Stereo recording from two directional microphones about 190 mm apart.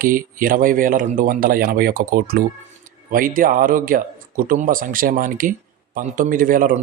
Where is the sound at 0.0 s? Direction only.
45° right (ahead or behind).